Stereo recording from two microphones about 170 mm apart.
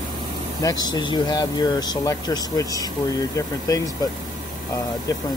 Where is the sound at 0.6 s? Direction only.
25° left (ahead or behind).